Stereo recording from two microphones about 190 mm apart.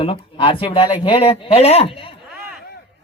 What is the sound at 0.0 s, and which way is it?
Speech, 30° left (ahead or behind).